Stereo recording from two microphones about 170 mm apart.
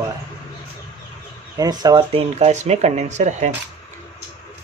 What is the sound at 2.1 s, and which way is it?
Speech, 40° right (ahead or behind).